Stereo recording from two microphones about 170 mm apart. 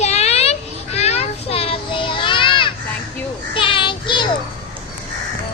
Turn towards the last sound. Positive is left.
turn(degrees=30)  # may be behind; listen again after turning